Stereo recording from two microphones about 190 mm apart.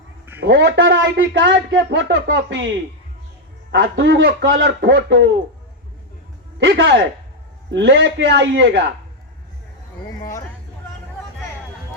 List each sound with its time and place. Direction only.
0.3 s speech: 65° right (ahead or behind)
3.7 s speech: 70° right (ahead or behind)
6.6 s speech: 70° right (ahead or behind)